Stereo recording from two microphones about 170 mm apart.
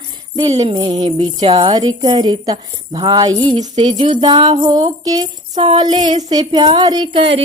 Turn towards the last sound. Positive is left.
turn(degrees=-30)  # may be behind; listen again after turning